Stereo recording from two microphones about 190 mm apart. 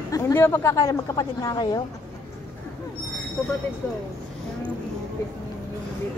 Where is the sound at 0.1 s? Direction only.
10° left (ahead or behind).